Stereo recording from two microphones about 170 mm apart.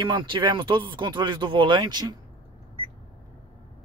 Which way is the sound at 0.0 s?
30° right (ahead or behind).